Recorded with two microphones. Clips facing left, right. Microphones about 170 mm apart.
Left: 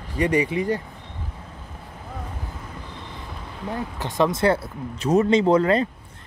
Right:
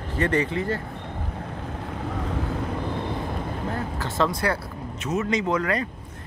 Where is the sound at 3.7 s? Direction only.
15° left (ahead or behind).